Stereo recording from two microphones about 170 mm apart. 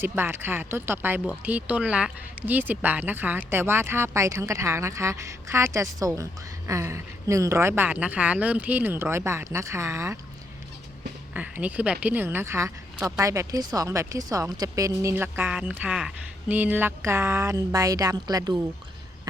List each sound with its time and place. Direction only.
0.0 s speech: 15° right (ahead or behind)
11.3 s speech: 10° right (ahead or behind)